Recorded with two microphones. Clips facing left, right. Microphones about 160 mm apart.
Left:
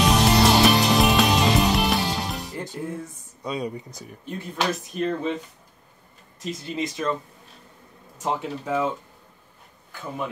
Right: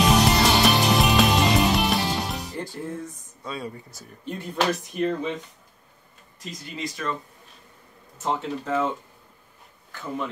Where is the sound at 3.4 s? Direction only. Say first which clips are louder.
Left 5 dB; 20° left (ahead or behind).